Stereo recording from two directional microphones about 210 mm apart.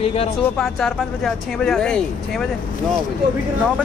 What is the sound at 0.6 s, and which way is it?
Speech, 5° left (ahead or behind).